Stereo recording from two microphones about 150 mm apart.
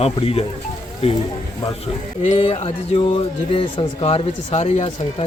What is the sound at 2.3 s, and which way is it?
A man's voice, 35° left (ahead or behind).